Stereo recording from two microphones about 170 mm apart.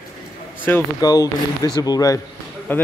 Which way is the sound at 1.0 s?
20° left (ahead or behind).